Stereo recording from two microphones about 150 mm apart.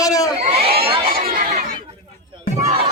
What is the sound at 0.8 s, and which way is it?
Crowd, 40° right (ahead or behind).